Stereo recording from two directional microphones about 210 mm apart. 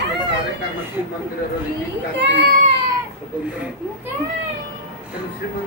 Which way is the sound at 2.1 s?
55° right (ahead or behind).